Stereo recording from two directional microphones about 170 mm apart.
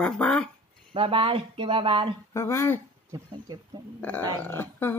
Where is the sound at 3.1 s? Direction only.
20° right (ahead or behind).